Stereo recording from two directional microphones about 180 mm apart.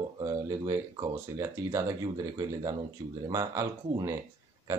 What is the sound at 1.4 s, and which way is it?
Speech, 20° right (ahead or behind).